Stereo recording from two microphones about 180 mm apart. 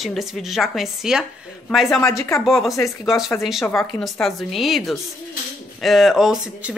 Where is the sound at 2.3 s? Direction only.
Centre (ahead or behind).